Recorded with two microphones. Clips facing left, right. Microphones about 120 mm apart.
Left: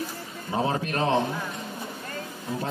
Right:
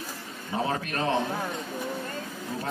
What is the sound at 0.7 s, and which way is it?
Speech, 30° left (ahead or behind).